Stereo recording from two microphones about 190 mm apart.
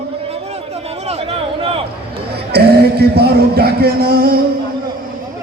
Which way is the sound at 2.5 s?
55° right (ahead or behind).